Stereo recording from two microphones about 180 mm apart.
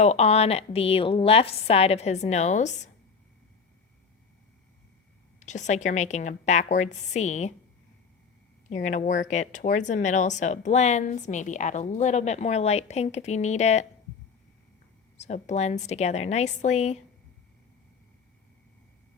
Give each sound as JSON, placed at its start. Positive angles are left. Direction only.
{"t": 0.0, "sound": "speech", "side_deg": 35}
{"t": 5.4, "sound": "speech", "side_deg": 40}
{"t": 8.7, "sound": "speech", "side_deg": 40}
{"t": 15.2, "sound": "speech", "side_deg": 40}